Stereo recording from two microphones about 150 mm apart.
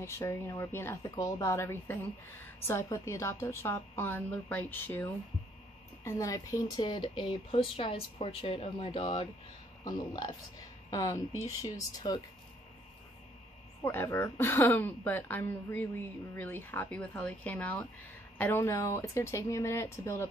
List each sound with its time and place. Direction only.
0.0 s a woman's voice: 20° left (ahead or behind)
13.8 s a woman's voice: 20° left (ahead or behind)